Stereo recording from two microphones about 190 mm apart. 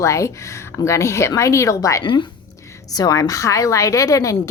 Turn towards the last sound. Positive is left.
turn(degrees=15)  # may be behind; listen again after turning